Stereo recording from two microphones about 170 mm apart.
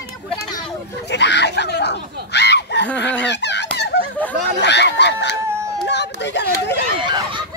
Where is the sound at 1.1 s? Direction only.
90° left.